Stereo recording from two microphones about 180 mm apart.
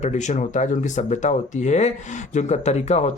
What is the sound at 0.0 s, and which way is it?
Speech, 40° left (ahead or behind).